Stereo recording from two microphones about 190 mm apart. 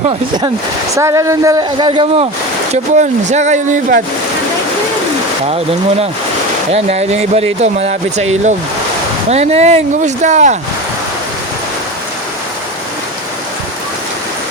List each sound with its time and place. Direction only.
0.9 s speech: 15° right (ahead or behind)
1.9 s speech: 25° right (ahead or behind)
2.7 s speech: 40° right (ahead or behind)
5.5 s speech: 30° right (ahead or behind)